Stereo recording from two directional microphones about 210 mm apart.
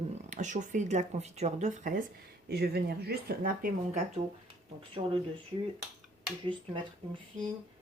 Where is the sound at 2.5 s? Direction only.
50° right (ahead or behind).